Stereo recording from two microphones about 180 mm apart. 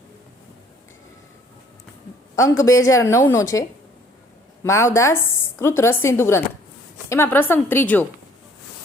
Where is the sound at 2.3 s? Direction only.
15° left (ahead or behind).